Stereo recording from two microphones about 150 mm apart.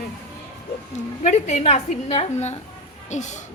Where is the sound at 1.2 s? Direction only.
50° left (ahead or behind).